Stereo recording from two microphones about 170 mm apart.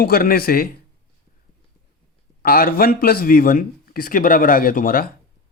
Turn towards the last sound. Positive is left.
turn(degrees=55)  # may be behind; listen again after turning